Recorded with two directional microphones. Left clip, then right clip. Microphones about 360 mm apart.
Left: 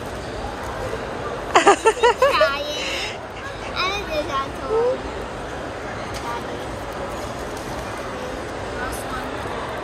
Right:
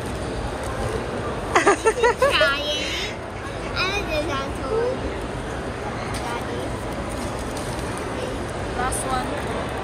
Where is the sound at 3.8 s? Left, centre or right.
Centre.